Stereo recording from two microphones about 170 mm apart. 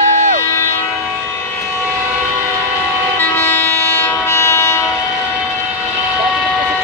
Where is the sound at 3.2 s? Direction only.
15° left (ahead or behind).